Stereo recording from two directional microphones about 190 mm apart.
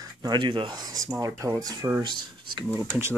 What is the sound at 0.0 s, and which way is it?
Speech, 20° right (ahead or behind).